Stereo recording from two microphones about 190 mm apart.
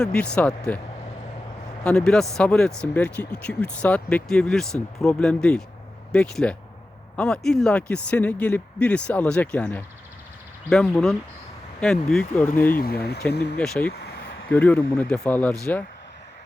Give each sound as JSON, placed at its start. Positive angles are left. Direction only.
{"t": 0.0, "sound": "speech", "side_deg": 5}
{"t": 1.8, "sound": "speech", "side_deg": 5}
{"t": 12.7, "sound": "speech", "side_deg": 55}
{"t": 13.6, "sound": "speech", "side_deg": 5}